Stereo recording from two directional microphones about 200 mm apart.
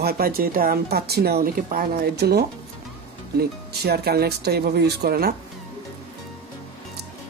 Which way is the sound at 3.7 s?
55° right (ahead or behind).